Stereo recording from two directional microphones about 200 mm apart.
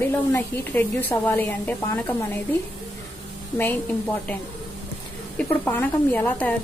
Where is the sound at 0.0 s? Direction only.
10° left (ahead or behind).